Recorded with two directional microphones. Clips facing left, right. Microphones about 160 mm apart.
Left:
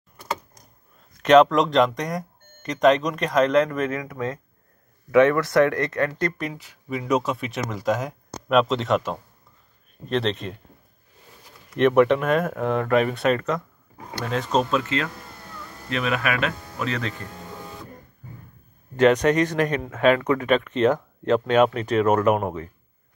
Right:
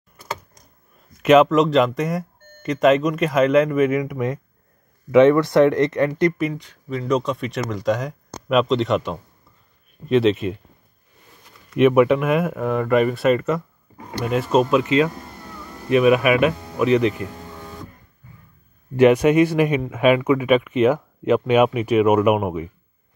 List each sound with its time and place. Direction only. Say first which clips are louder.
1.2 s speech: right 2 dB; 5° right (ahead or behind)
6.5 s speech: right 3 dB; 10° left (ahead or behind)
11.7 s speech: right 3 dB; 5° right (ahead or behind)
18.9 s speech: right 4 dB; 10° right (ahead or behind)